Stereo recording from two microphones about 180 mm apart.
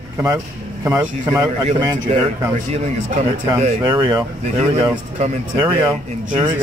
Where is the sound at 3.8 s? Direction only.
20° right (ahead or behind).